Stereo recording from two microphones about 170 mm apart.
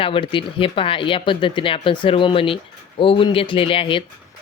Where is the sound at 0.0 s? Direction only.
30° left (ahead or behind).